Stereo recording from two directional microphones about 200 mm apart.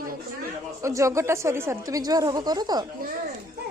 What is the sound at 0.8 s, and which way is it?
Speech, 15° right (ahead or behind).